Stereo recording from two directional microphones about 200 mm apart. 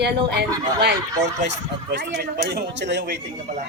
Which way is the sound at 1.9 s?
55° right (ahead or behind).